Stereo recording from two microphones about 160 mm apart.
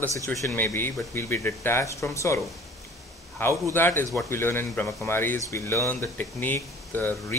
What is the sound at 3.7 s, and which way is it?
Speech, 15° left (ahead or behind).